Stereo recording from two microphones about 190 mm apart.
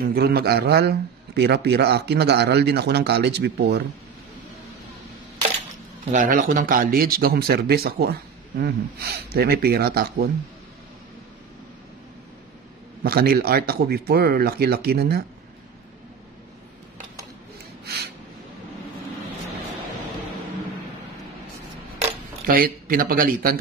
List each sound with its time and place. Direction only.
0.1 s a man's voice: 55° right (ahead or behind)
6.1 s speech: 45° right (ahead or behind)
13.0 s a man's voice: 55° right (ahead or behind)
22.5 s speech: 50° right (ahead or behind)